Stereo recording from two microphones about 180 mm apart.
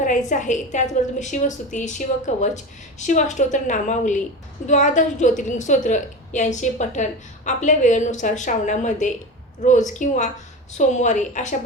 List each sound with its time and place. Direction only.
0.0 s a woman's voice: 45° left (ahead or behind)